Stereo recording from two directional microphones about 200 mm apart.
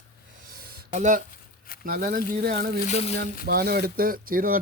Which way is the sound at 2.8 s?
30° left (ahead or behind).